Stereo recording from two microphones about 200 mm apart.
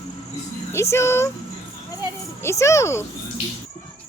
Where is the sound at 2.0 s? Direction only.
15° left (ahead or behind).